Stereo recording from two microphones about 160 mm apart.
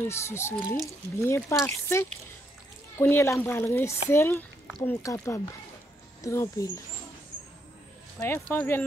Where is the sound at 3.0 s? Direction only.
15° left (ahead or behind).